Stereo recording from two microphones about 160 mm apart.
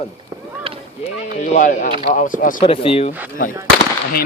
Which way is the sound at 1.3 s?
45° left (ahead or behind).